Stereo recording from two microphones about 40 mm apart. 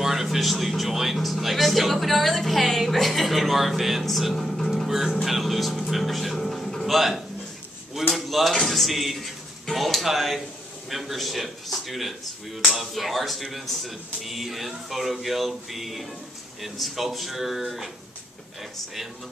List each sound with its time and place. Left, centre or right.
0.0 s speech: centre
4.8 s speech: centre
7.9 s a sound: centre
8.6 s speech: centre